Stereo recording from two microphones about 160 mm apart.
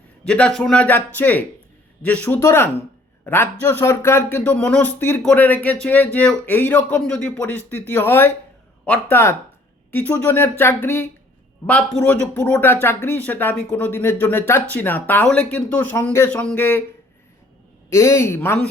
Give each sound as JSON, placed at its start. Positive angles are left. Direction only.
{"t": 0.3, "sound": "a man's voice", "side_deg": 5}
{"t": 11.6, "sound": "a man's voice", "side_deg": 10}
{"t": 17.8, "sound": "a man's voice", "side_deg": 15}